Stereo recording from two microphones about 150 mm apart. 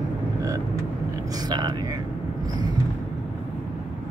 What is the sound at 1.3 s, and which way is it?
Speech, 25° right (ahead or behind).